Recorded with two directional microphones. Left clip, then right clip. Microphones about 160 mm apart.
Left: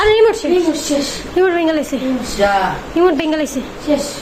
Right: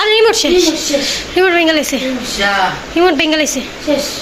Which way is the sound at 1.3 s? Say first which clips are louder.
Right 3 dB; 5° left (ahead or behind).